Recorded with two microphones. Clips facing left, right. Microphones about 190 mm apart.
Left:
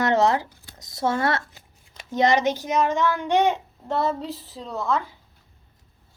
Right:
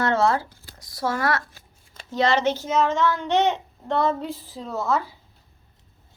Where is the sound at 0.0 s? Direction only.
20° left (ahead or behind).